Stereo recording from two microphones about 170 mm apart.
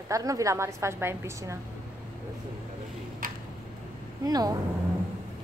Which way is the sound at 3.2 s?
55° right (ahead or behind).